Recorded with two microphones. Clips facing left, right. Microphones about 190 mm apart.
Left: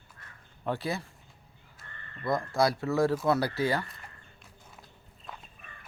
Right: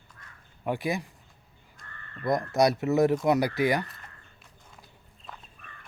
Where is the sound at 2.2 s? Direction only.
20° right (ahead or behind).